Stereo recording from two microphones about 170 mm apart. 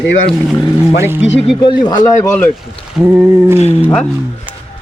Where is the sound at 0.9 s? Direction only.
15° right (ahead or behind).